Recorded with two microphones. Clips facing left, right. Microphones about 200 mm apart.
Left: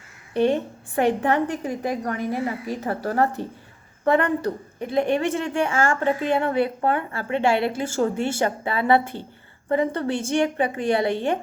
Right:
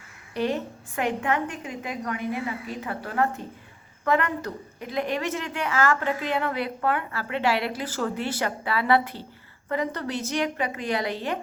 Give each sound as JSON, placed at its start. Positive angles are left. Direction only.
{"t": 0.3, "sound": "a woman's voice", "side_deg": 30}